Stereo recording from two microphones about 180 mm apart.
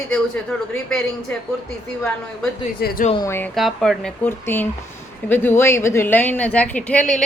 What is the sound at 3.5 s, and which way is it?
A woman's voice, centre (ahead or behind).